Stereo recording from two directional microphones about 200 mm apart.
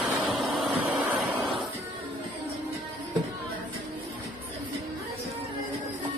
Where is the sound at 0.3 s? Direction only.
10° right (ahead or behind).